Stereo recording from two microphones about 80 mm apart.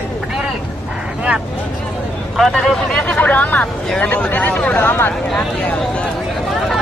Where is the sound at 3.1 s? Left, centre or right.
Centre.